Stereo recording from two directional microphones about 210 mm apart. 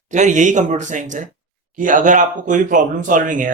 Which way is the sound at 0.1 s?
35° right (ahead or behind).